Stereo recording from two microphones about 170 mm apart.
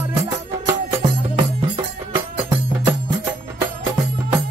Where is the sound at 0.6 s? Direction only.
25° right (ahead or behind).